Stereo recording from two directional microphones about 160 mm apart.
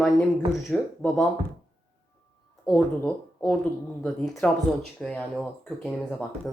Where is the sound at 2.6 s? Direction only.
10° left (ahead or behind).